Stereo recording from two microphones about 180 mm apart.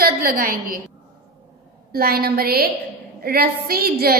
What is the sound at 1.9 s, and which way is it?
A woman's voice, 60° right (ahead or behind).